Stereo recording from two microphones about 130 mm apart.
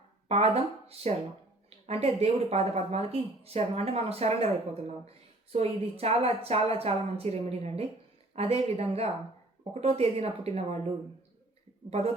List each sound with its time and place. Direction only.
0.3 s speech: 55° right (ahead or behind)